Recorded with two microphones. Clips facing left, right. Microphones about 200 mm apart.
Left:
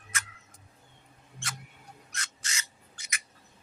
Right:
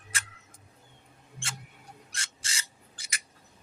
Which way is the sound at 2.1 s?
30° right (ahead or behind).